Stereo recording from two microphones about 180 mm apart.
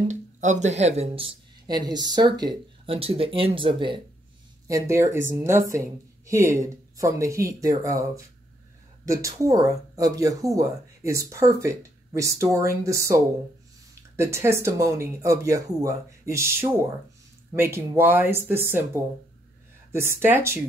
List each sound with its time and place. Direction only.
0.1 s speech: 40° right (ahead or behind)
4.6 s speech: 15° right (ahead or behind)
19.9 s speech: 15° right (ahead or behind)